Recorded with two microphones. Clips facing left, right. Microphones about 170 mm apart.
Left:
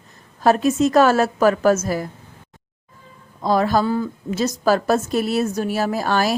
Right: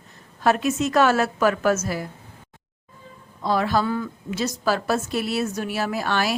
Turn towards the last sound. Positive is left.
turn(degrees=40)  # may be behind; listen again after turning